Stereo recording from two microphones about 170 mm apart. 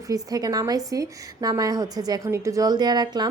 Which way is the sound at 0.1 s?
20° right (ahead or behind).